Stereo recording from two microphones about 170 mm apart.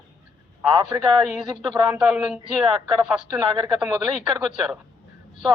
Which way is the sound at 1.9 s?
5° right (ahead or behind).